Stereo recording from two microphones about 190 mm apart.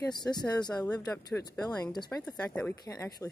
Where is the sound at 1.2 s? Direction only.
20° left (ahead or behind).